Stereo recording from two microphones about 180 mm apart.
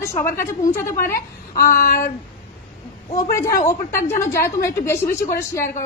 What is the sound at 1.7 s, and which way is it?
Speech, 55° left (ahead or behind).